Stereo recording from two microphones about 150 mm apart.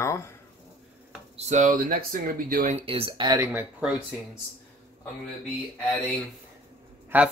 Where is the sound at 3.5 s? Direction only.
10° right (ahead or behind).